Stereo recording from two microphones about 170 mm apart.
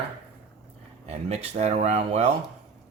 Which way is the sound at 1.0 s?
40° right (ahead or behind).